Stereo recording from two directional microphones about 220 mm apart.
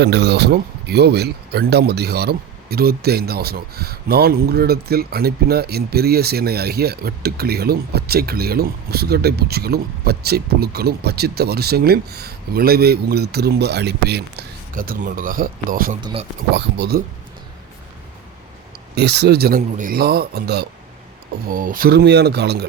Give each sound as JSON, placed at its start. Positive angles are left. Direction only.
{"t": 0.0, "sound": "speech", "side_deg": -50}
{"t": 16.0, "sound": "speech", "side_deg": -20}
{"t": 16.5, "sound": "speech", "side_deg": -50}
{"t": 18.9, "sound": "speech", "side_deg": -50}